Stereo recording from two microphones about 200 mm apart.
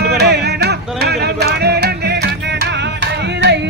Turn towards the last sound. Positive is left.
turn(degrees=-55)  # may be behind; listen again after turning